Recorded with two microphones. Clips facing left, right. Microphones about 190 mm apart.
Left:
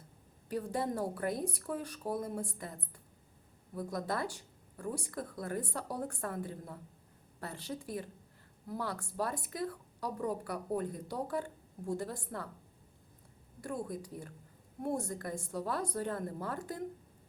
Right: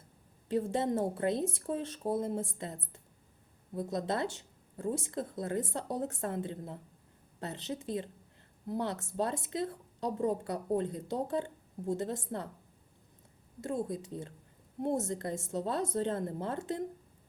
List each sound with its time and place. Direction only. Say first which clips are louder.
0.4 s speech: right 4 dB; 25° right (ahead or behind)
13.6 s speech: right 4 dB; 25° right (ahead or behind)